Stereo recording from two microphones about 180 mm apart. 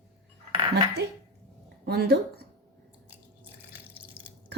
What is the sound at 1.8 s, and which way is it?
Speech, 60° right (ahead or behind).